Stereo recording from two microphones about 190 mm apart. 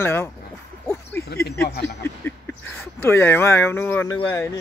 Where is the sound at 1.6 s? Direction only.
55° left (ahead or behind).